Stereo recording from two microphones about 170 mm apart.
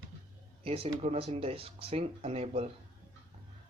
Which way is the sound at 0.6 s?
35° right (ahead or behind).